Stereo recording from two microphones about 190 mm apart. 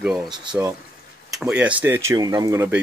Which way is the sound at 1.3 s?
5° right (ahead or behind).